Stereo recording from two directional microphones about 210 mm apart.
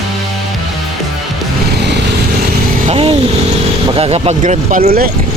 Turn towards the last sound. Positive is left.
turn(degrees=-45)  # may be behind; listen again after turning